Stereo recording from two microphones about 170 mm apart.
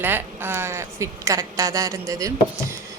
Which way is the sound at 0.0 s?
15° right (ahead or behind).